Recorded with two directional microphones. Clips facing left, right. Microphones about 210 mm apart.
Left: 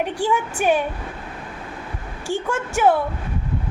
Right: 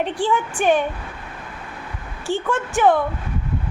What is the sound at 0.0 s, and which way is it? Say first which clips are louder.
Speech: right 1 dB; 10° left (ahead or behind).